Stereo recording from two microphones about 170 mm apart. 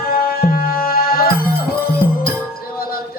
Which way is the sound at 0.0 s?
60° left (ahead or behind).